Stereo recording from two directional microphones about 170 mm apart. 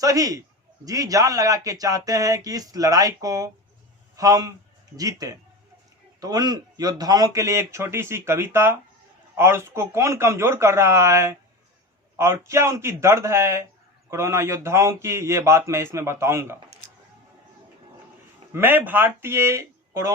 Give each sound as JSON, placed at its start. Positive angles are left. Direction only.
{"t": 0.0, "sound": "speech", "side_deg": -20}
{"t": 18.5, "sound": "speech", "side_deg": -10}